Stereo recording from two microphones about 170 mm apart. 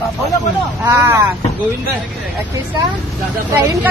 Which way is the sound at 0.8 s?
15° right (ahead or behind).